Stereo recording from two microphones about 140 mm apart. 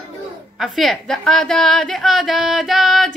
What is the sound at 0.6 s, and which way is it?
A woman's voice, centre (ahead or behind).